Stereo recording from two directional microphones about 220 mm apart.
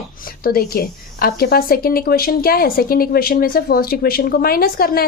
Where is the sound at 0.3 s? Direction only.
40° left (ahead or behind).